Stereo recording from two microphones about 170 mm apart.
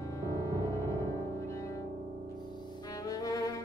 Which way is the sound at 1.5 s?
20° left (ahead or behind).